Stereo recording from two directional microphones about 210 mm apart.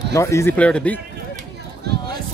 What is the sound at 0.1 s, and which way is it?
Speech, 15° left (ahead or behind).